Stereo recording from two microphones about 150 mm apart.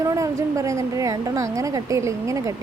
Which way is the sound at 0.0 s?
20° right (ahead or behind).